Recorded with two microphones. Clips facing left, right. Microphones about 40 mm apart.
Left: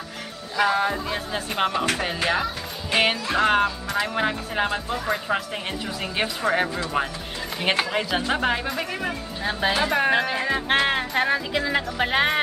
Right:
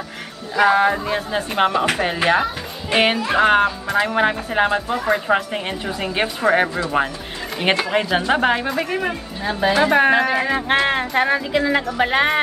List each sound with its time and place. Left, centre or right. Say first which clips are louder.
0.6 s speech: right 6 dB; centre
9.4 s a woman's voice: right 6 dB; centre
9.8 s speech: right 7 dB; centre